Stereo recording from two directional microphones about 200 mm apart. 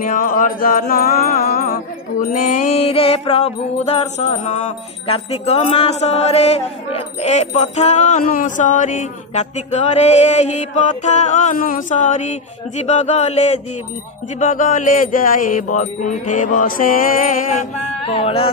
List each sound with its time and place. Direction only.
0.0 s music: 40° left (ahead or behind)
2.3 s mantra: 40° left (ahead or behind)